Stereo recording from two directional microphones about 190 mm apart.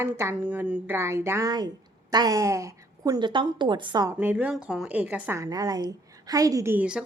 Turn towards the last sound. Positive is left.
turn(degrees=-5)  # may be behind; listen again after turning